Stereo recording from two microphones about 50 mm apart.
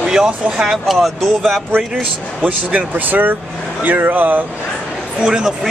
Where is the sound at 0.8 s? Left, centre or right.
Centre.